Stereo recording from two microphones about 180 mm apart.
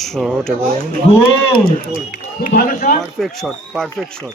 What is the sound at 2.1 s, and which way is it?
Speech, 50° left (ahead or behind).